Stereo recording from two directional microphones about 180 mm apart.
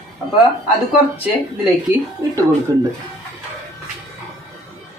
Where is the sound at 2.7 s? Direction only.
20° right (ahead or behind).